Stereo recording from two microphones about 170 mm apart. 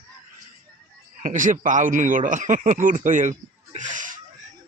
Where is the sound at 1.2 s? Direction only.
50° right (ahead or behind).